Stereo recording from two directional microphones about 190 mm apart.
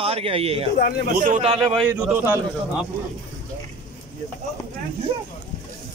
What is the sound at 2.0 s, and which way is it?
Speech, 10° right (ahead or behind).